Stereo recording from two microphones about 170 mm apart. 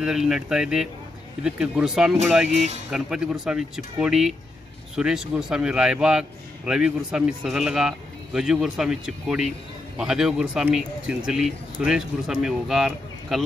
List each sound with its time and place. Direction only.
0.0 s a man's voice: 5° right (ahead or behind)
2.5 s speech: 40° right (ahead or behind)
2.9 s a man's voice: 5° right (ahead or behind)